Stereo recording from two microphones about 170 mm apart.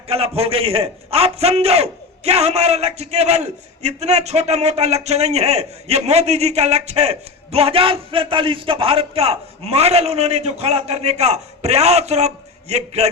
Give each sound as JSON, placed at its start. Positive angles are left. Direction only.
{"t": 0.1, "sound": "a man's voice", "side_deg": -35}